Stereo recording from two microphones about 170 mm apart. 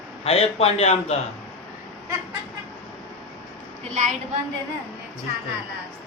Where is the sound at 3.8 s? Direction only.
45° right (ahead or behind).